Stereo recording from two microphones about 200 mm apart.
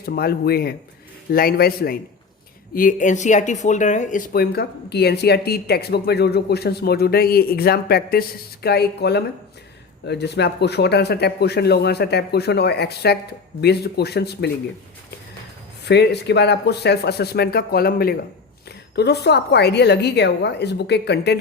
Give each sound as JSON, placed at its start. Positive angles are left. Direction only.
{"t": 0.0, "sound": "speech", "side_deg": 50}
{"t": 15.8, "sound": "speech", "side_deg": 55}